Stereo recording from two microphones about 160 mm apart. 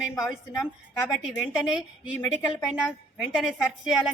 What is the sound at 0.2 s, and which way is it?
A woman's voice, centre (ahead or behind).